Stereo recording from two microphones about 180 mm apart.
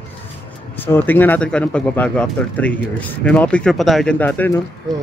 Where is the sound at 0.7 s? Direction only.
10° left (ahead or behind).